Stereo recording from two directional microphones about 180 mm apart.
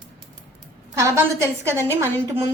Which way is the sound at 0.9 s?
15° right (ahead or behind).